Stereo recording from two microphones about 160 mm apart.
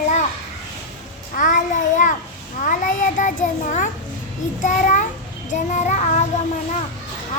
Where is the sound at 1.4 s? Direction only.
55° left (ahead or behind).